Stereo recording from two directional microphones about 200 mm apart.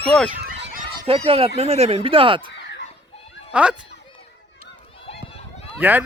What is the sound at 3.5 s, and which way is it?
Speech, 5° right (ahead or behind).